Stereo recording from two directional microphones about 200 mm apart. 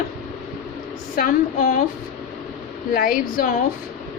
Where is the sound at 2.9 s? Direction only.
45° left (ahead or behind).